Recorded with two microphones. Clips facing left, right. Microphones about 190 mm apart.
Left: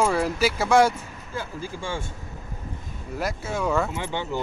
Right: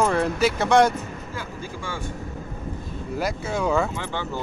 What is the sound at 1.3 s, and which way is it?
Speech, 30° left (ahead or behind).